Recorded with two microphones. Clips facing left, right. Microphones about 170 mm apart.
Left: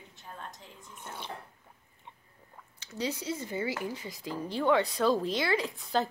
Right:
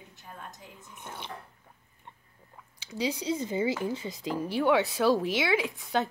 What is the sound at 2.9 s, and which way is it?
Speech, 15° right (ahead or behind).